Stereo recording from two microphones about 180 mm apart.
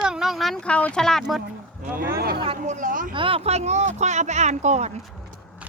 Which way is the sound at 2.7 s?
45° right (ahead or behind).